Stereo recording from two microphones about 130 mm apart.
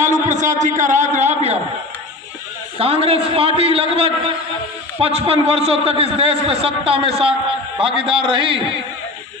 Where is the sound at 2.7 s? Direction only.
50° right (ahead or behind).